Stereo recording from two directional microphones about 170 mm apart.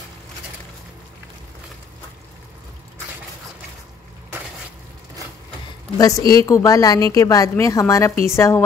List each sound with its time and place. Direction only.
5.9 s a woman's voice: 20° left (ahead or behind)